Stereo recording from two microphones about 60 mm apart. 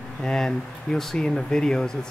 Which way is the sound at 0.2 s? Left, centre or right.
Centre.